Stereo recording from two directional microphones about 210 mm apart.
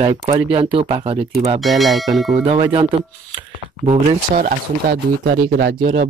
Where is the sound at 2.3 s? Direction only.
25° right (ahead or behind).